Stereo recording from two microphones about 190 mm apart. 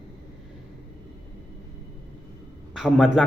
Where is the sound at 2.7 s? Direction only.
Centre (ahead or behind).